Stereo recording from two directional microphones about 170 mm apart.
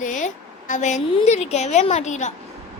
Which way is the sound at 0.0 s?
50° left (ahead or behind).